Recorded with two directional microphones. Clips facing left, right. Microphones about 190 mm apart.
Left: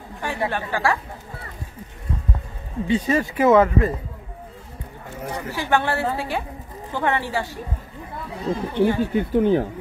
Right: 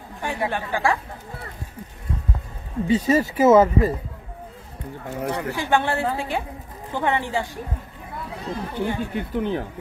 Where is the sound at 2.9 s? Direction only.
40° right (ahead or behind).